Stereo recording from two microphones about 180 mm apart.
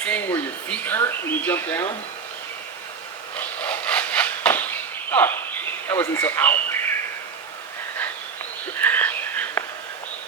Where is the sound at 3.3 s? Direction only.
10° left (ahead or behind).